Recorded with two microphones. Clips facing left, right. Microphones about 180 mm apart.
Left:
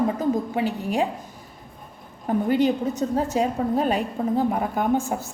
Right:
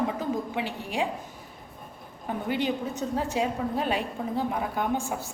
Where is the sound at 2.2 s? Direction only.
45° left (ahead or behind).